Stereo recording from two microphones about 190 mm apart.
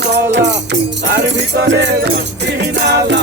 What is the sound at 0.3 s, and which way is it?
Music, 65° right (ahead or behind).